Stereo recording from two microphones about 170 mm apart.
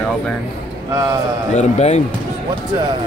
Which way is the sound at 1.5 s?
40° left (ahead or behind).